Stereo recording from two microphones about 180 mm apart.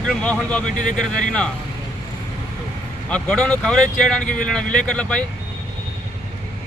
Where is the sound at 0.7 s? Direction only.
45° left (ahead or behind).